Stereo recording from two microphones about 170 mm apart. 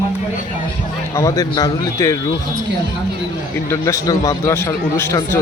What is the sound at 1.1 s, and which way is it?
Speech, 20° left (ahead or behind).